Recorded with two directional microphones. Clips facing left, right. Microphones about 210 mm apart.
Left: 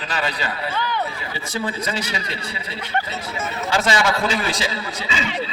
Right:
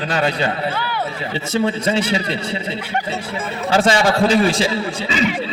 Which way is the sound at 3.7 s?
30° right (ahead or behind).